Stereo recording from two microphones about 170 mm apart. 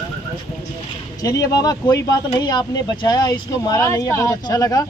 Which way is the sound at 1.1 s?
20° left (ahead or behind).